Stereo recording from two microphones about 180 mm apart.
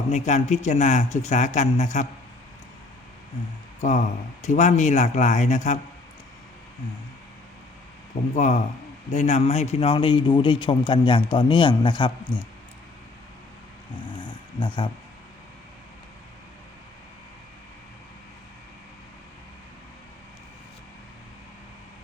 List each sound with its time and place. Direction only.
0.1 s a man's voice: 40° left (ahead or behind)
3.8 s a man's voice: 40° left (ahead or behind)
8.4 s a man's voice: 40° left (ahead or behind)
13.9 s dog: 25° left (ahead or behind)